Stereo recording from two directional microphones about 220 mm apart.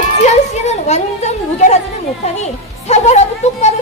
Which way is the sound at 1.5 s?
30° left (ahead or behind).